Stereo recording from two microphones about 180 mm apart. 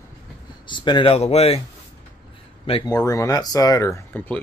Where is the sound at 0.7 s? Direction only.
25° left (ahead or behind).